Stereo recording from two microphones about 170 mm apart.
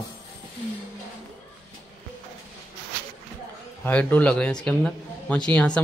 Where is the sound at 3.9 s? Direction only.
10° left (ahead or behind).